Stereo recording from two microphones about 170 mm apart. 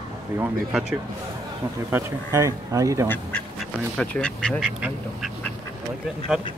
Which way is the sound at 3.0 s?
10° left (ahead or behind).